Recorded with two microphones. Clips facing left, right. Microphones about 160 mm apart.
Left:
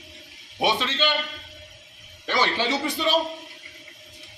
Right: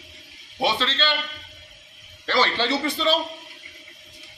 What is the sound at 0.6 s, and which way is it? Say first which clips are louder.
Speech: even; 15° left (ahead or behind).